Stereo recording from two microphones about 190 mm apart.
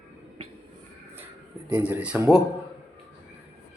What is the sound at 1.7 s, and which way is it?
Speech, 10° right (ahead or behind).